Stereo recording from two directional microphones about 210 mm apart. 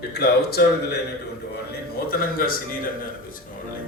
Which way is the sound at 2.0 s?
45° left (ahead or behind).